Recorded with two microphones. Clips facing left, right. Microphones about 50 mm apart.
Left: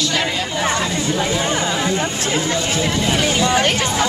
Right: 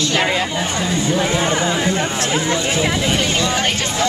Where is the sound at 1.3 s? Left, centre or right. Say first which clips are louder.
Right 2 dB; centre.